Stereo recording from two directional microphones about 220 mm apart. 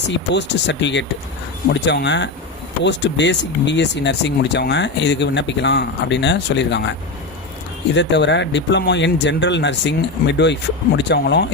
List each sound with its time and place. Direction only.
0.3 s speech: 55° left (ahead or behind)
7.9 s speech: 55° left (ahead or behind)